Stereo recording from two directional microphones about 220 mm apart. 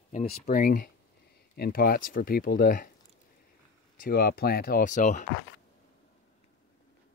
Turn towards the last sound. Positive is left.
turn(degrees=35)  # may be behind; listen again after turning